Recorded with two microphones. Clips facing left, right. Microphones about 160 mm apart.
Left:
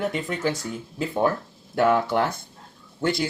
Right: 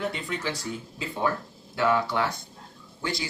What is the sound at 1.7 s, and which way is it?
Speech, 55° left (ahead or behind).